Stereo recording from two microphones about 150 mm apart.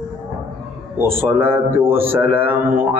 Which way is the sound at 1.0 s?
15° right (ahead or behind).